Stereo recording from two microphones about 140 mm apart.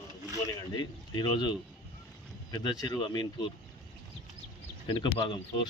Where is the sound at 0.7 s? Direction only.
30° left (ahead or behind).